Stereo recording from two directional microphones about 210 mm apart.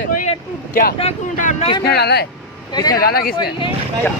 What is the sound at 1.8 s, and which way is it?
Speech, 50° left (ahead or behind).